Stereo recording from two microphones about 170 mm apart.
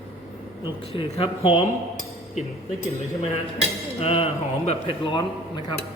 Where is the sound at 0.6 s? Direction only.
30° left (ahead or behind).